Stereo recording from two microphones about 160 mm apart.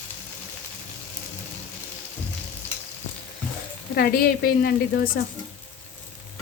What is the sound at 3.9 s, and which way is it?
Speech, 75° left (ahead or behind).